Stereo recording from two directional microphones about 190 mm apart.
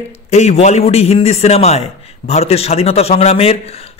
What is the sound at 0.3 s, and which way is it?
A man's voice, 35° left (ahead or behind).